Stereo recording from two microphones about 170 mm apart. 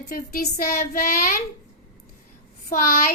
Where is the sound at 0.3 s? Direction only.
60° left (ahead or behind).